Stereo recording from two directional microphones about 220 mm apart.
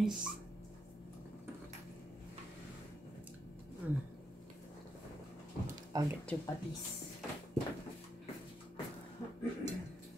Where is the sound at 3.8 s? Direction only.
5° right (ahead or behind).